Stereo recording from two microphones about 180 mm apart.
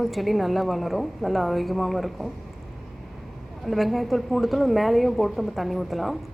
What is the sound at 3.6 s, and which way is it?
A woman's voice, centre (ahead or behind).